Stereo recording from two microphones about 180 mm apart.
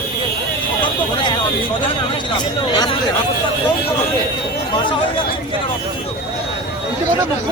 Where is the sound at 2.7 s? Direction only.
25° left (ahead or behind).